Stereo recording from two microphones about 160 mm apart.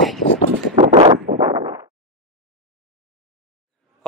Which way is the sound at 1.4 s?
25° right (ahead or behind).